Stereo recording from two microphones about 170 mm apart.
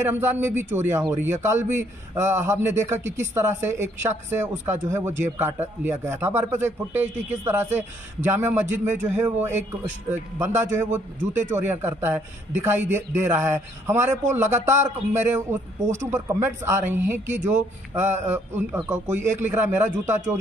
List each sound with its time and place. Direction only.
0.0 s a man's voice: 15° right (ahead or behind)